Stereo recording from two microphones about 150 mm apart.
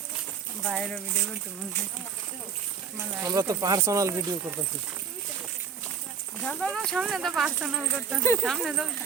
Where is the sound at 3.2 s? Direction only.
25° right (ahead or behind).